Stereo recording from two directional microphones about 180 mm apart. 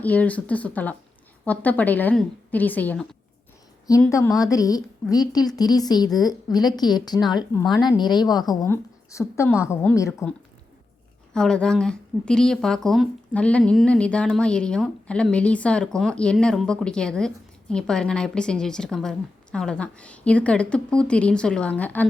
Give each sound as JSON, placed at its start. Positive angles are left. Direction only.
{"t": 0.0, "sound": "a woman's voice", "side_deg": 10}
{"t": 4.1, "sound": "a woman's voice", "side_deg": 20}
{"t": 11.3, "sound": "speech", "side_deg": 5}